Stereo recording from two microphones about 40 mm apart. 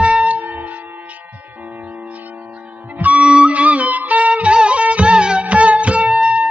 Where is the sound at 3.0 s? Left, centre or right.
Right.